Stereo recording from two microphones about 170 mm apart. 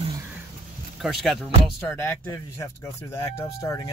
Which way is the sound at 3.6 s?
20° left (ahead or behind).